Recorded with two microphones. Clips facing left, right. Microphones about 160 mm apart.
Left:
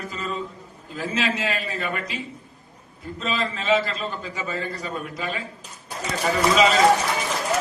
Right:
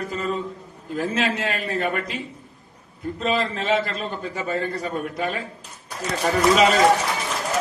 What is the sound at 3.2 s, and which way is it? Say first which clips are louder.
A man's voice: right 3 dB; 55° right (ahead or behind).